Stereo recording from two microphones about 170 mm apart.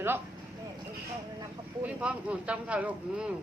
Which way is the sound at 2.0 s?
5° right (ahead or behind).